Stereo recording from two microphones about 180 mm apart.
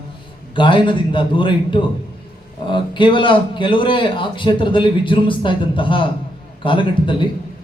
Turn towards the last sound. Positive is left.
turn(degrees=30)  # may be behind; listen again after turning